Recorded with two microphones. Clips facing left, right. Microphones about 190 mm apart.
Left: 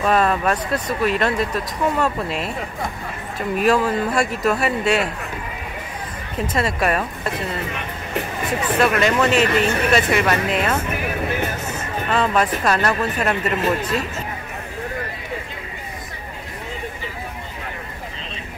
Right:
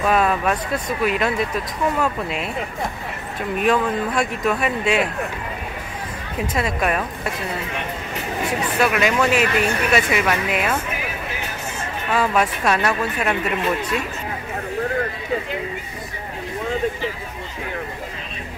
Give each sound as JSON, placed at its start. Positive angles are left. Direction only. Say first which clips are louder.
{"t": 0.0, "sound": "speech", "louder": "left 1 dB", "side_deg": 0}
{"t": 6.5, "sound": "speech", "louder": "left 1 dB", "side_deg": 0}
{"t": 8.7, "sound": "speech", "louder": "left 2 dB", "side_deg": -5}
{"t": 12.1, "sound": "speech", "louder": "even", "side_deg": 0}